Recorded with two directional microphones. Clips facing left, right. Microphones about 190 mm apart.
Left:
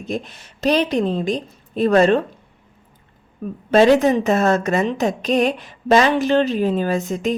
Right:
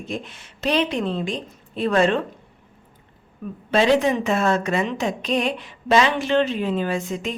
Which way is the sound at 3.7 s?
45° left (ahead or behind).